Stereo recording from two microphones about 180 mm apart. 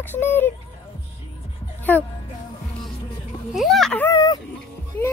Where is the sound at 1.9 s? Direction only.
10° left (ahead or behind).